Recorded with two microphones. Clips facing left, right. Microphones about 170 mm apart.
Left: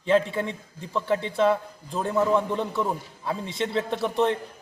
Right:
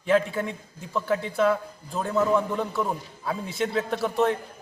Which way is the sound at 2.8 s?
Centre (ahead or behind).